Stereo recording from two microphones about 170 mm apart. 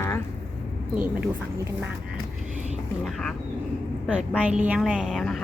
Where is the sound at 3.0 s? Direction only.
5° left (ahead or behind).